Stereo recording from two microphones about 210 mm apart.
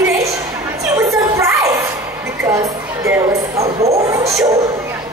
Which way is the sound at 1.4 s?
15° right (ahead or behind).